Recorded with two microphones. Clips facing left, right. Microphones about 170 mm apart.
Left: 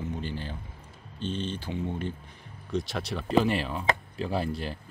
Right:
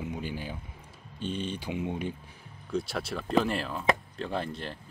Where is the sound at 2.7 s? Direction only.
5° right (ahead or behind).